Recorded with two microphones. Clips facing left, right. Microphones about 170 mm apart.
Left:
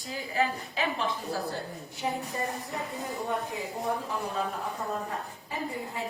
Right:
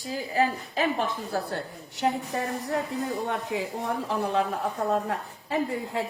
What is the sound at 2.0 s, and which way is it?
A woman's voice, 80° right.